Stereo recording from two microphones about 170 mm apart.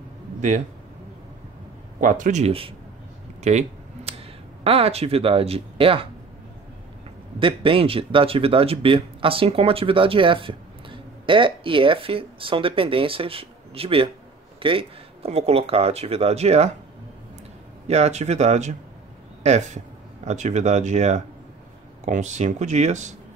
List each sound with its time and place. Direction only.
2.0 s speech: 50° right (ahead or behind)
3.4 s a sound: 40° right (ahead or behind)
4.6 s speech: 35° right (ahead or behind)
7.3 s speech: 30° right (ahead or behind)
17.8 s speech: 40° right (ahead or behind)